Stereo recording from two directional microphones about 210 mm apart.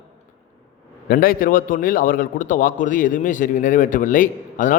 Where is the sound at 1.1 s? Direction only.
40° left (ahead or behind).